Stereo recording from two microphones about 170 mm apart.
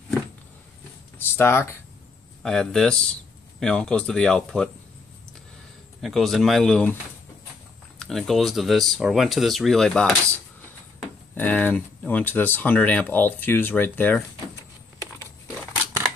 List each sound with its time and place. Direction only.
1.1 s speech: 15° left (ahead or behind)
2.4 s speech: 5° left (ahead or behind)
5.9 s speech: centre (ahead or behind)
8.0 s speech: centre (ahead or behind)
11.3 s speech: 10° left (ahead or behind)